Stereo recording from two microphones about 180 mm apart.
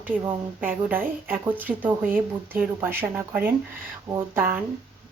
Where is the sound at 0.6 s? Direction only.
10° right (ahead or behind).